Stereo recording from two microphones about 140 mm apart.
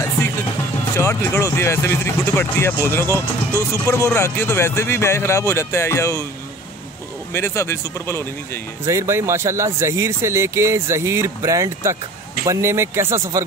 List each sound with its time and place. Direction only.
1.4 s speech: 20° left (ahead or behind)
7.3 s speech: 20° left (ahead or behind)
8.8 s speech: 20° right (ahead or behind)